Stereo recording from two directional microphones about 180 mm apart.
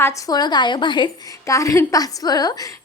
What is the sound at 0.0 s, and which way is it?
A woman's voice, 20° left (ahead or behind).